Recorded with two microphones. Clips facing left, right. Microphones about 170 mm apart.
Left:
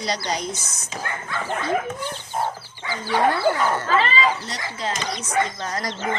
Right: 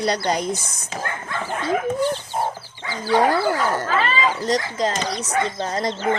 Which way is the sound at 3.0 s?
40° right (ahead or behind).